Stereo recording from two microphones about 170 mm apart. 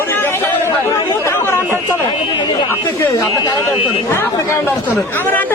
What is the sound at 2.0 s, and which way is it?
Chatter, 25° left (ahead or behind).